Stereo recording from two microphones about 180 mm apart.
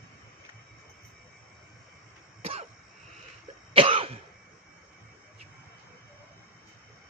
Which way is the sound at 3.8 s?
30° right (ahead or behind).